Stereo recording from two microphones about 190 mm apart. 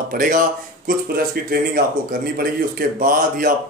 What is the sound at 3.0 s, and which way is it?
Speech, 45° right (ahead or behind).